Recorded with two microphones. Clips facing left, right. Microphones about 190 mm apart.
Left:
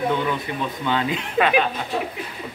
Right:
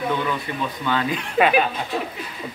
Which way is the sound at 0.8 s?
20° left (ahead or behind).